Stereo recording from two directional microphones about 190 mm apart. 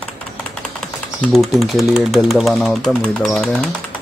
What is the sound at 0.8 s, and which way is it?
Speech, centre (ahead or behind).